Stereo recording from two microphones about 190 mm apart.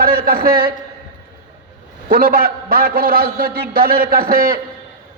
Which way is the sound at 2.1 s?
50° right (ahead or behind).